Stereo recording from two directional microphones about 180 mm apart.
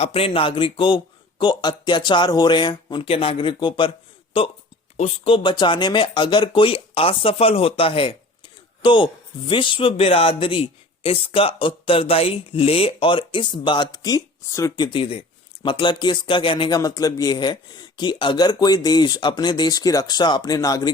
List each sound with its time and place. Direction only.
0.0 s speech: 35° left (ahead or behind)
14.8 s speech: 30° left (ahead or behind)